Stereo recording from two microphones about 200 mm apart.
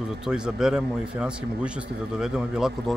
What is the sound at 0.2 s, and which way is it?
Speech, 5° right (ahead or behind).